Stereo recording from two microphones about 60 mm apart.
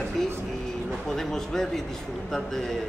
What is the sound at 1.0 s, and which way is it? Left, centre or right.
Speech, centre.